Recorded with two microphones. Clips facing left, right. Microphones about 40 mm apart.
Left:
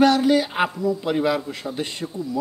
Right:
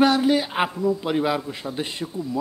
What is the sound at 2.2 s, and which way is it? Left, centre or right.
Speech, right.